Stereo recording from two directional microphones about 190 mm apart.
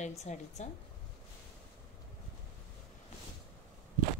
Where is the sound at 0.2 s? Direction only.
35° left (ahead or behind).